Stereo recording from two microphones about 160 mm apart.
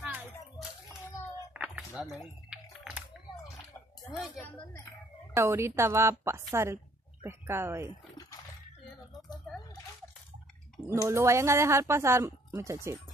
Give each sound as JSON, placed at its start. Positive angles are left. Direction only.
{"t": 0.0, "sound": "children playing", "side_deg": -10}
{"t": 1.5, "sound": "a sound", "side_deg": -10}
{"t": 2.0, "sound": "typing", "side_deg": -5}
{"t": 5.3, "sound": "speech", "side_deg": -15}
{"t": 11.0, "sound": "speech", "side_deg": -20}